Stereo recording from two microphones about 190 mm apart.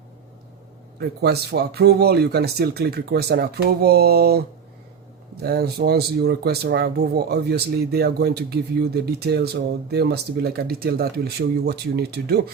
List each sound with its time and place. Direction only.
0.9 s speech: 55° right (ahead or behind)